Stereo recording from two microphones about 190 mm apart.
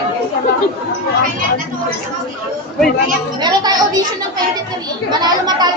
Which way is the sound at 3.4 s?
20° right (ahead or behind).